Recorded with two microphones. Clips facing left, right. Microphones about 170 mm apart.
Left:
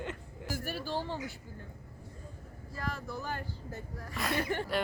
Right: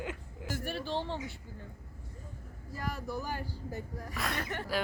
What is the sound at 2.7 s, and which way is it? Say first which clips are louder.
Speech: right 2 dB; 15° right (ahead or behind).